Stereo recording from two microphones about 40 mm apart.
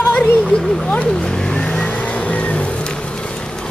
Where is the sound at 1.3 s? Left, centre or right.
Centre.